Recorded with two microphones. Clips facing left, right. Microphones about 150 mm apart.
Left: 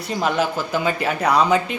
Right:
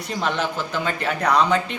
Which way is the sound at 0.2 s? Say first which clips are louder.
Left 3 dB; 10° left (ahead or behind).